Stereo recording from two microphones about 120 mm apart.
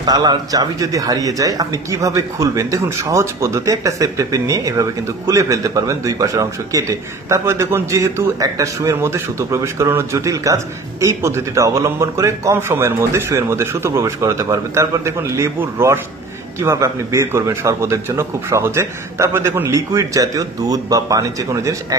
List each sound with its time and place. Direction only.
0.0 s speech: 35° right (ahead or behind)